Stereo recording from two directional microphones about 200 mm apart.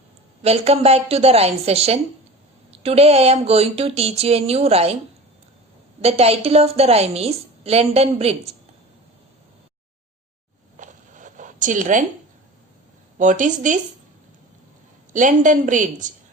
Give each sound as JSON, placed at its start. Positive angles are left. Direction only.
{"t": 0.4, "sound": "a woman's voice", "side_deg": -30}
{"t": 6.0, "sound": "a woman's voice", "side_deg": -30}
{"t": 10.8, "sound": "zipper", "side_deg": -40}
{"t": 13.1, "sound": "a woman's voice", "side_deg": -40}
{"t": 15.1, "sound": "a woman's voice", "side_deg": -40}